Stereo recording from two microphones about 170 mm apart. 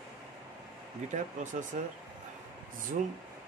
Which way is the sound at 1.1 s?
45° right (ahead or behind).